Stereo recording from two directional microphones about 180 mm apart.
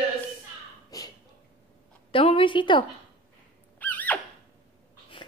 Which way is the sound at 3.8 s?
10° left (ahead or behind).